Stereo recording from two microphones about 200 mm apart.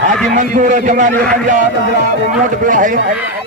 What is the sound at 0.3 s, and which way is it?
Speech, 40° right (ahead or behind).